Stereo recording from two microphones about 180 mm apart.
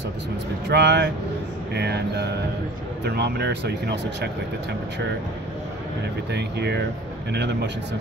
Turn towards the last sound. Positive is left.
turn(degrees=-70)  # may be behind; listen again after turning